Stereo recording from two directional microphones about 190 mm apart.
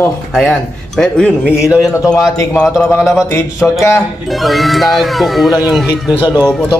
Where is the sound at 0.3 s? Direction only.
Centre (ahead or behind).